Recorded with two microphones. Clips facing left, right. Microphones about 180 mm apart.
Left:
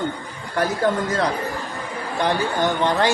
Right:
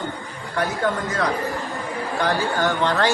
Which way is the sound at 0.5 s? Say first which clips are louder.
Left 2 dB; 40° left (ahead or behind).